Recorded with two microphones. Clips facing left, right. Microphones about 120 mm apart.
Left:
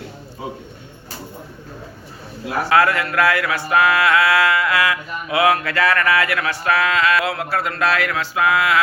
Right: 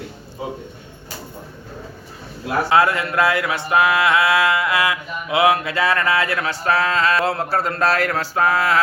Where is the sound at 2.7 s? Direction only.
20° right (ahead or behind).